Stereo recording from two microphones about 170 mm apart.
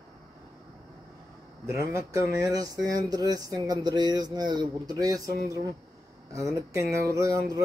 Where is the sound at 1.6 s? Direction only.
15° right (ahead or behind).